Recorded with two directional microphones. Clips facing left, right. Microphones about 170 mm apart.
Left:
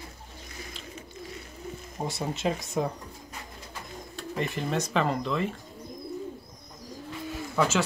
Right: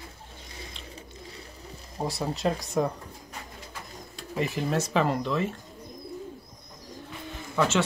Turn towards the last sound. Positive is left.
turn(degrees=0)  # may be behind; listen again after turning